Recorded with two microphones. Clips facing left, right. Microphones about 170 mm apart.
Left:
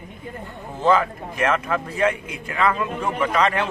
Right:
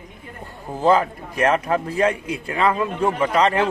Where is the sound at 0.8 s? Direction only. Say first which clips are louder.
Right 2 dB; 35° right (ahead or behind).